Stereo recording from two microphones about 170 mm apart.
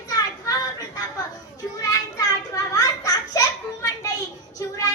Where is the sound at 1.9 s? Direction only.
20° left (ahead or behind).